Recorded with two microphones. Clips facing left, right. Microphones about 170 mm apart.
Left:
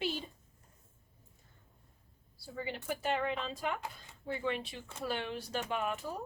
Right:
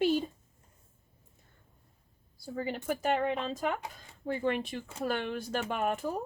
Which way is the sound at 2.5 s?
45° right (ahead or behind).